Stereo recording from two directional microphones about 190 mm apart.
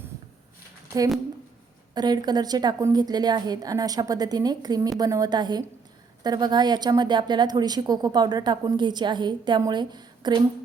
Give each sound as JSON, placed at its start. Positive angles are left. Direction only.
{"t": 2.0, "sound": "a woman's voice", "side_deg": -20}